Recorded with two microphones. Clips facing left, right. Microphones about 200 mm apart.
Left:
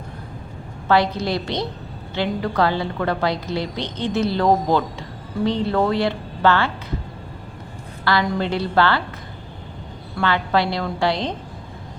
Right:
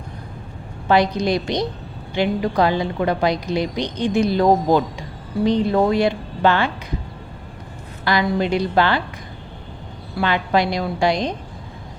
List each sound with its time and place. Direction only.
0.9 s a woman's voice: 15° right (ahead or behind)
8.0 s a woman's voice: 15° right (ahead or behind)
10.2 s a woman's voice: 15° right (ahead or behind)